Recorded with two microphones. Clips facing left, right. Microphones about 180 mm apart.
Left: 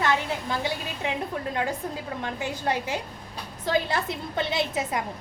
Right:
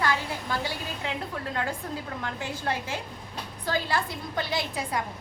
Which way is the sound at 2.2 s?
20° left (ahead or behind).